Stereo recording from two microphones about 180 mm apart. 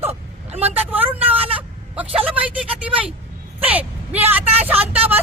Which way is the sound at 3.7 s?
10° right (ahead or behind).